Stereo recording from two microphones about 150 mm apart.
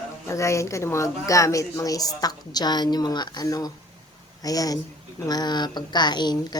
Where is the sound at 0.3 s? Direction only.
20° left (ahead or behind).